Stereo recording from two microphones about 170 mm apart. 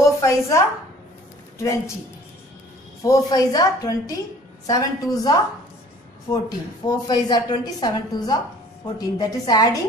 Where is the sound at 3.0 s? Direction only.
20° left (ahead or behind).